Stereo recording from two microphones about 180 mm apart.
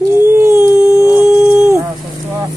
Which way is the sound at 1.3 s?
10° right (ahead or behind).